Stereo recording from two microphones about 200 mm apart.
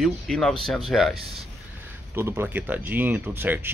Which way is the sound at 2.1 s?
15° right (ahead or behind).